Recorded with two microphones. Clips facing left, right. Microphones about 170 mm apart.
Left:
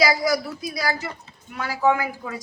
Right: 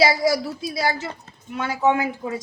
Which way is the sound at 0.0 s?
25° right (ahead or behind).